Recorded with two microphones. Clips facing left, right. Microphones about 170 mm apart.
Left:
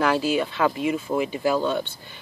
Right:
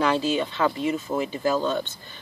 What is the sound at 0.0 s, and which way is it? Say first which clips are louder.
Speech: left 1 dB; 10° left (ahead or behind).